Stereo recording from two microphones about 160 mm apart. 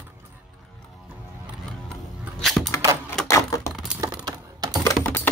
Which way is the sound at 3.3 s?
20° left (ahead or behind).